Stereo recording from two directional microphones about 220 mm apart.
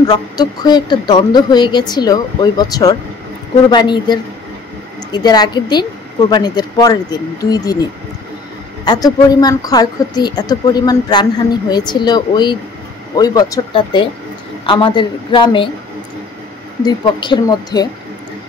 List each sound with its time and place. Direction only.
0.0 s a woman's voice: 20° left (ahead or behind)
8.8 s a woman's voice: 20° left (ahead or behind)
16.8 s a woman's voice: 20° left (ahead or behind)